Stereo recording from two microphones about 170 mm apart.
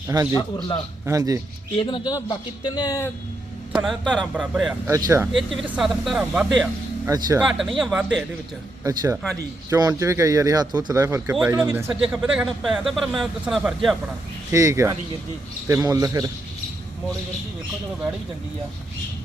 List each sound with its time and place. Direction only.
0.1 s speech: 25° right (ahead or behind)
1.8 s speech: 25° left (ahead or behind)
3.7 s a sound: 5° right (ahead or behind)
4.0 s speech: 5° left (ahead or behind)
4.4 s speech: 5° right (ahead or behind)
4.9 s speech: 20° right (ahead or behind)
5.5 s speech: centre (ahead or behind)
8.8 s speech: 20° right (ahead or behind); by 13.9 s 5° right (ahead or behind)
14.5 s speech: 20° right (ahead or behind)